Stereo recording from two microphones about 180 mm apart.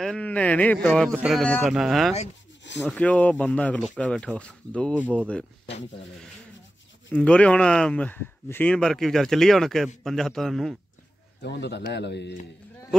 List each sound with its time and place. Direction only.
0.0 s speech: 5° left (ahead or behind)
7.1 s speech: 5° left (ahead or behind)
11.4 s a man's voice: 70° left (ahead or behind)